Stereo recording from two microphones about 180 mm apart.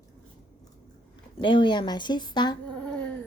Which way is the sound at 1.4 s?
30° left (ahead or behind).